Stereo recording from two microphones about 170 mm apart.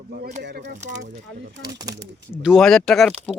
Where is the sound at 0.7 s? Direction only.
45° right (ahead or behind).